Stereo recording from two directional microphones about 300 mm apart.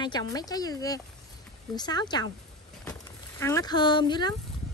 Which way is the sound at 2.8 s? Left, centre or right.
Centre.